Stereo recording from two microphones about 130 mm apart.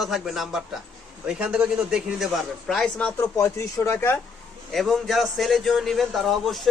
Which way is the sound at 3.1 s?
25° left (ahead or behind).